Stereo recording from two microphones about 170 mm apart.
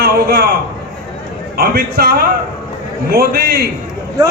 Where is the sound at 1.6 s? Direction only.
60° right (ahead or behind).